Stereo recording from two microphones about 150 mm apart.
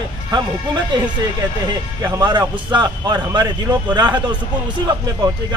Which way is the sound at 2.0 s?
30° right (ahead or behind).